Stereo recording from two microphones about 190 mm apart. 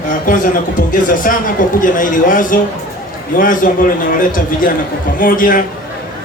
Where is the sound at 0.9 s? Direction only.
45° left (ahead or behind).